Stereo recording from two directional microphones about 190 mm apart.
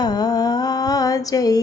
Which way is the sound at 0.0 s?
20° left (ahead or behind).